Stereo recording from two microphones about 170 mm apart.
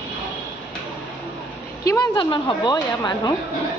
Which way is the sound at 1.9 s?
25° left (ahead or behind).